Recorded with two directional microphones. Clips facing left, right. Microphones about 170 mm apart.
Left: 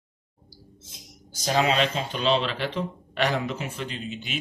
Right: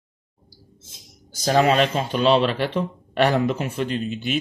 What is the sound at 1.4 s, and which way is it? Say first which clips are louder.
Speech: right 5 dB; 50° right (ahead or behind).